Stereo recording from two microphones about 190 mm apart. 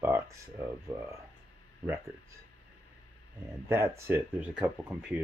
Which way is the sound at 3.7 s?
15° right (ahead or behind).